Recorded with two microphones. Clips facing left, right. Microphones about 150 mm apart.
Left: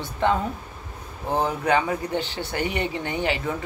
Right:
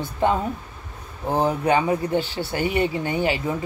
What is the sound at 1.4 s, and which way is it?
Speech, 25° right (ahead or behind).